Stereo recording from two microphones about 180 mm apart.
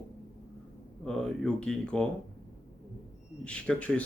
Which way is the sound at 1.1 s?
5° left (ahead or behind).